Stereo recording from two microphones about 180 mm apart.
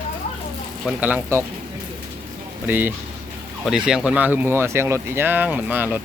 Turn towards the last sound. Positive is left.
turn(degrees=-10)  # may be behind; listen again after turning